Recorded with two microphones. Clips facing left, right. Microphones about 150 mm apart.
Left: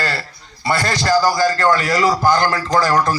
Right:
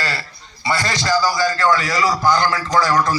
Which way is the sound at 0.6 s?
55° left (ahead or behind).